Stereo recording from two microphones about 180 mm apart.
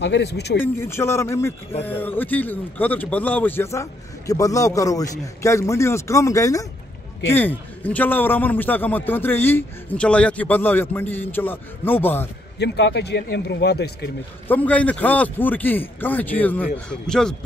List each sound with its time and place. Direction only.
0.0 s speech: 70° left (ahead or behind)
0.6 s a man's voice: 15° left (ahead or behind)
12.5 s speech: 70° left (ahead or behind)
14.5 s a man's voice: 10° left (ahead or behind)